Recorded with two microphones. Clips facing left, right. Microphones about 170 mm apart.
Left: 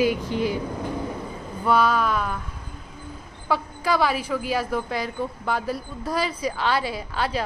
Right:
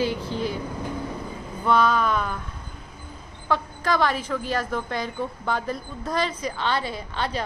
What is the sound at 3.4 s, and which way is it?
A woman's voice, 5° left (ahead or behind).